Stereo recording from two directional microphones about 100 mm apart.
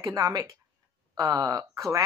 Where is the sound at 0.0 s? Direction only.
35° right (ahead or behind).